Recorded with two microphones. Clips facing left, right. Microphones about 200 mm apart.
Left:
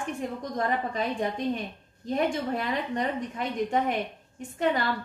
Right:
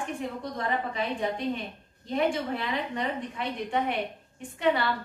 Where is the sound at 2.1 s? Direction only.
45° left (ahead or behind).